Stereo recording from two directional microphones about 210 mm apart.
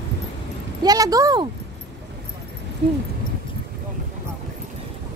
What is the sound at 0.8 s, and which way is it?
Speech, 15° right (ahead or behind).